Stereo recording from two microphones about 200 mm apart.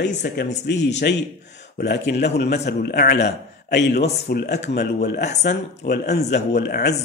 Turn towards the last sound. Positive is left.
turn(degrees=50)  # may be behind; listen again after turning